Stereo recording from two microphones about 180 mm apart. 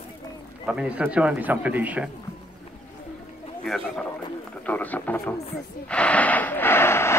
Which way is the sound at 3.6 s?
5° left (ahead or behind).